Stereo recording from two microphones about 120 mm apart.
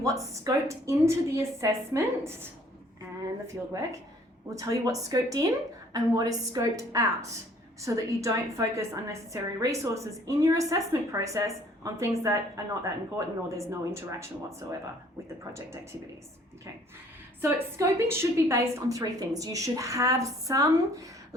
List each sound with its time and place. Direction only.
0.0 s a woman's voice: 25° right (ahead or behind)
3.4 s a woman's voice: 30° right (ahead or behind)
17.7 s a woman's voice: 20° right (ahead or behind)